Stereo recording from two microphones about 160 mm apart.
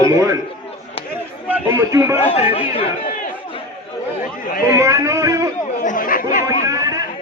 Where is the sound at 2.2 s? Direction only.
40° left (ahead or behind).